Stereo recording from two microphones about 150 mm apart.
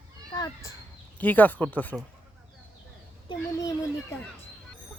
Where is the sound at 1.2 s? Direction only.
10° left (ahead or behind).